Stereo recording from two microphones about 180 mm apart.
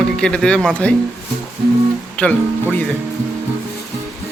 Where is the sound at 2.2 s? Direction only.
10° left (ahead or behind).